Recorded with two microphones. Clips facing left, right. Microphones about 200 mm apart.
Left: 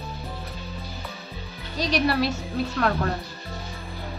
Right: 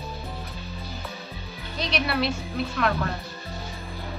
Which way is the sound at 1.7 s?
40° left (ahead or behind).